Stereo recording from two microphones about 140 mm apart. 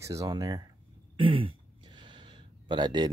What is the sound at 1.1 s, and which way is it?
Throat clearing, 40° right (ahead or behind).